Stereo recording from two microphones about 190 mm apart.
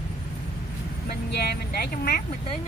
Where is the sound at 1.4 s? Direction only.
55° left (ahead or behind).